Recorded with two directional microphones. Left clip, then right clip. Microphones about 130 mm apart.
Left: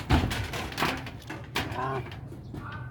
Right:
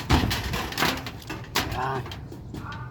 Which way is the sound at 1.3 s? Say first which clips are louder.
Right 5 dB; 35° right (ahead or behind).